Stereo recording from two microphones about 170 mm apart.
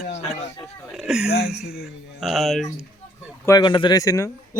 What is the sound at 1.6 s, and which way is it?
Speech, 65° left (ahead or behind).